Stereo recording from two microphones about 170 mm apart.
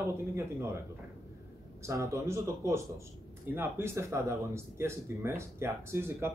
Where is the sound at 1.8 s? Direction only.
20° right (ahead or behind).